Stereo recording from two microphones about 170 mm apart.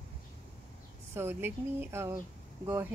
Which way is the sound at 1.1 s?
15° right (ahead or behind).